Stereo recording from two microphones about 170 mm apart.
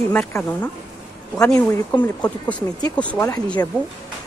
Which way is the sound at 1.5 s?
15° left (ahead or behind).